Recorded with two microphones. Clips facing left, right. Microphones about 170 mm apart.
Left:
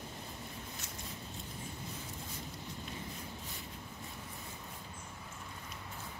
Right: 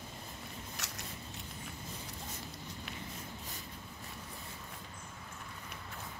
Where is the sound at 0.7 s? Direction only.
80° right.